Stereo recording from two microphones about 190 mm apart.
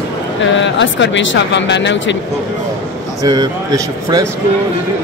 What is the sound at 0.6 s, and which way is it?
Speech, 75° left (ahead or behind).